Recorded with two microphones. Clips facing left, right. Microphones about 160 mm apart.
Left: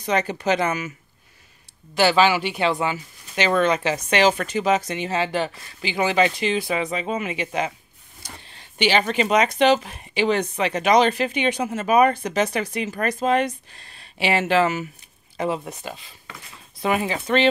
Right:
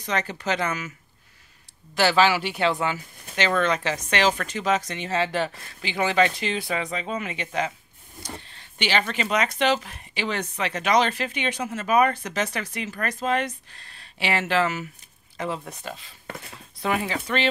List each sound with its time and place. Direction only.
0.0 s speech: 15° left (ahead or behind)
2.0 s speech: 5° left (ahead or behind)
8.7 s speech: 15° left (ahead or behind)
15.8 s speech: 5° left (ahead or behind)
16.3 s speech: 55° right (ahead or behind)
16.8 s speech: 15° left (ahead or behind)